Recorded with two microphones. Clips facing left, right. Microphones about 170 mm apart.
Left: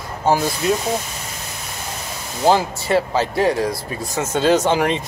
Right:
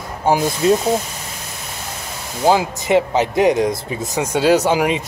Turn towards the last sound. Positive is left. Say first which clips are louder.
# right 1 dB
turn(degrees=-10)  # may be behind; listen again after turning